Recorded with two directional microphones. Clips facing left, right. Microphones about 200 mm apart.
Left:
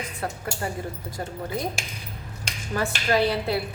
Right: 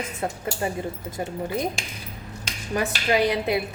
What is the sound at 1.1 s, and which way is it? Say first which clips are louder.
Speech: right 3 dB; 20° right (ahead or behind).